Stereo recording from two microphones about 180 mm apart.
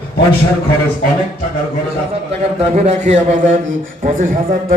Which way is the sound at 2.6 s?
40° right (ahead or behind).